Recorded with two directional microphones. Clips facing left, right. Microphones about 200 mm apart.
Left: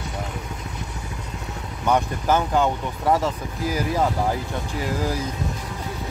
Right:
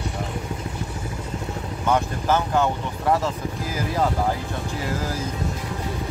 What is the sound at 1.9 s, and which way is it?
Speech, 15° left (ahead or behind).